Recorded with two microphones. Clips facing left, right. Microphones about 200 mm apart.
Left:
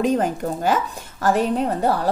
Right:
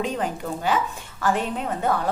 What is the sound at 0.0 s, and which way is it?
A woman's voice, 45° left (ahead or behind).